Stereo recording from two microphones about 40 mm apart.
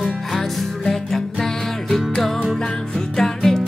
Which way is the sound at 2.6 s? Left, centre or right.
Left.